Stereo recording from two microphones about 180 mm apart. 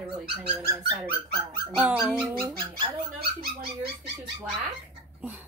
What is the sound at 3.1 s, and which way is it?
Speech, 60° right (ahead or behind).